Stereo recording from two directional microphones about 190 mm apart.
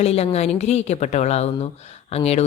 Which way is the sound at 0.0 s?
35° left (ahead or behind).